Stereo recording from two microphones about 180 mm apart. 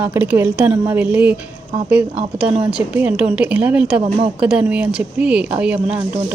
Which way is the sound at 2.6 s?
10° right (ahead or behind).